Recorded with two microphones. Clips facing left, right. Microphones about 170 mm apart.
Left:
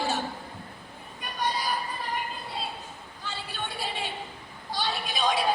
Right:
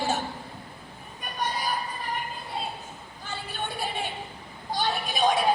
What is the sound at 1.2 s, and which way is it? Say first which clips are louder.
Vehicle: left 1 dB; 50° right (ahead or behind).